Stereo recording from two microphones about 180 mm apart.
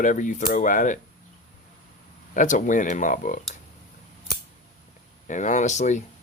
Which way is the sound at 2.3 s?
45° left (ahead or behind).